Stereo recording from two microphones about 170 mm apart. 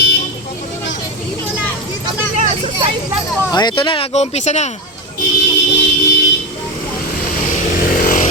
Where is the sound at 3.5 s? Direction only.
25° left (ahead or behind); by 4.7 s 40° left (ahead or behind).